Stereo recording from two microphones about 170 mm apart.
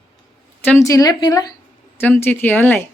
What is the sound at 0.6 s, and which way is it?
Speech, 15° left (ahead or behind).